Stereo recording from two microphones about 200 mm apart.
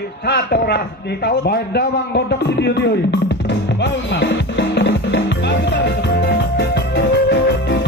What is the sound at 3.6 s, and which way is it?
Music, 60° left (ahead or behind).